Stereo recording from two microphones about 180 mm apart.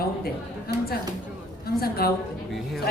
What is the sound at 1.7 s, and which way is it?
Speech, 55° left (ahead or behind).